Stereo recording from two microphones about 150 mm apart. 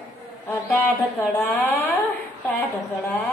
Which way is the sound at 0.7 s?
15° left (ahead or behind).